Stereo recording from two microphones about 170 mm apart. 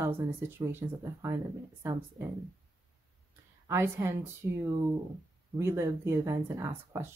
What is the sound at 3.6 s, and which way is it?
Speech, 15° right (ahead or behind).